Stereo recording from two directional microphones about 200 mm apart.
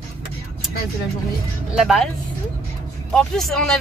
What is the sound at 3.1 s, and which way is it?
Speech, centre (ahead or behind).